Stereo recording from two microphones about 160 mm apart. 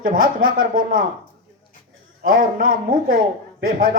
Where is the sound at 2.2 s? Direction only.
65° right (ahead or behind).